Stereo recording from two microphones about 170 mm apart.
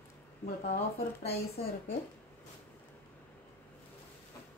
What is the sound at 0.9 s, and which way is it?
Speech, 35° left (ahead or behind).